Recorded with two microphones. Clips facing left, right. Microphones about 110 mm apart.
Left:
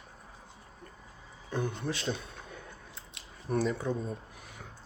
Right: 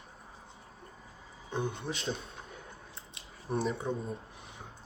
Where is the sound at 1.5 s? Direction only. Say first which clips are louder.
Left 1 dB; 20° right (ahead or behind).